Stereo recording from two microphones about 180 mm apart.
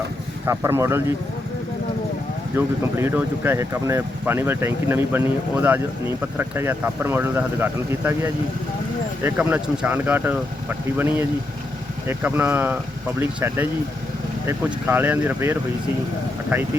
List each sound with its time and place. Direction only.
0.4 s speech: 15° right (ahead or behind)
2.6 s speech: 10° right (ahead or behind)